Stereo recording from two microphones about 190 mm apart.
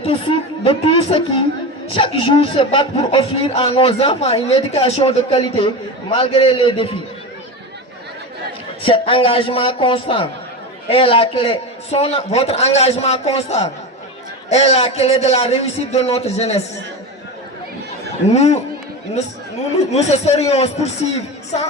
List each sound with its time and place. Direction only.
0.0 s a sound: 30° left (ahead or behind)
1.9 s speech: 30° left (ahead or behind)
8.8 s a man's voice: 30° left (ahead or behind)
18.3 s a man's voice: 35° left (ahead or behind)
19.9 s a man's voice: 35° left (ahead or behind)